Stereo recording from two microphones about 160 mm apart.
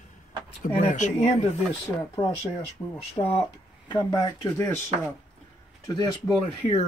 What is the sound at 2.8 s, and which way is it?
Speech, 20° left (ahead or behind).